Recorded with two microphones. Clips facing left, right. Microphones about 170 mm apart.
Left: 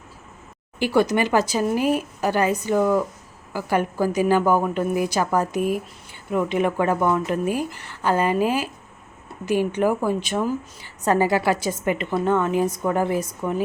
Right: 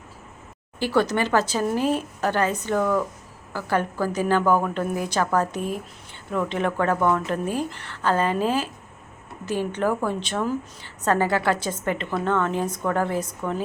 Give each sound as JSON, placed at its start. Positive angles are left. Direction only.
{"t": 0.8, "sound": "a woman's voice", "side_deg": 15}